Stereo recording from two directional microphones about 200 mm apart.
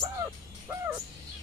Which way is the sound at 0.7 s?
15° right (ahead or behind).